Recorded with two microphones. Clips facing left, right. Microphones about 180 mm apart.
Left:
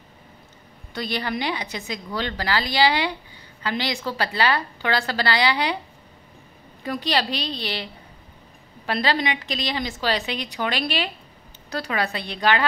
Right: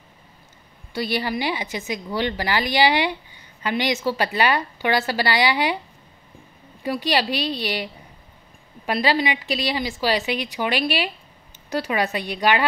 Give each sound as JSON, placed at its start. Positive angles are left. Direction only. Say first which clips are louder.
{"t": 1.0, "sound": "a woman's voice", "louder": "right 2 dB", "side_deg": -10}
{"t": 6.8, "sound": "a woman's voice", "louder": "right 2 dB", "side_deg": -15}